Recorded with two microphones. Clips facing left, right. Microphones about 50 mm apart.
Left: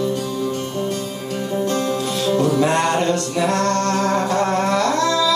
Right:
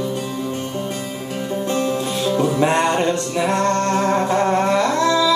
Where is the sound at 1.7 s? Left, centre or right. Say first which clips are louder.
Right 3 dB; right.